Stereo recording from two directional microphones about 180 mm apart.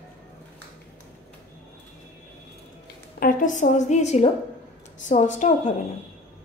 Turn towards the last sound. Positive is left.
turn(degrees=40)  # may be behind; listen again after turning